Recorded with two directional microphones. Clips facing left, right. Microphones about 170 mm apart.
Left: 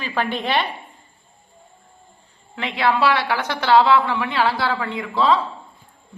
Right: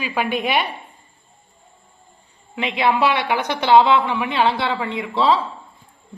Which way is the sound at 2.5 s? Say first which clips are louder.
Right 1 dB; 20° right (ahead or behind).